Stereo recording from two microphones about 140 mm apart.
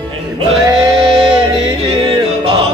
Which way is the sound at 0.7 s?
30° right (ahead or behind).